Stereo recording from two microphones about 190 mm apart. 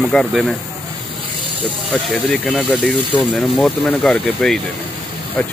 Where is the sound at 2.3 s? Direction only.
5° left (ahead or behind).